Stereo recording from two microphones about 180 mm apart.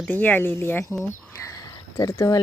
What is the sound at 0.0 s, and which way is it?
Speech, 10° left (ahead or behind).